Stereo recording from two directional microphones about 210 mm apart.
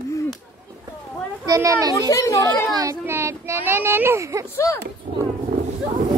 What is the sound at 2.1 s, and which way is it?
Speech, 15° left (ahead or behind).